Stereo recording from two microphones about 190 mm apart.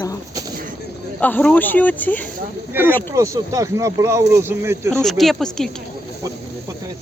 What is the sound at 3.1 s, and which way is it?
Speech, 20° right (ahead or behind).